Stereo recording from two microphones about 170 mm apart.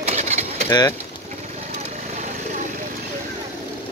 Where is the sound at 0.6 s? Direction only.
20° left (ahead or behind).